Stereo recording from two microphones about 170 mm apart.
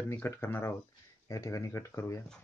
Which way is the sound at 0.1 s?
10° left (ahead or behind).